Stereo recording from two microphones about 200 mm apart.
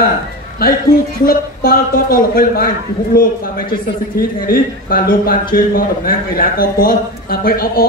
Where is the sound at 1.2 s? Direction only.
45° left (ahead or behind).